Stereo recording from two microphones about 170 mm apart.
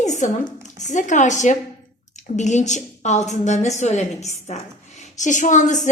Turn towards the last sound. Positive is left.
turn(degrees=45)  # may be behind; listen again after turning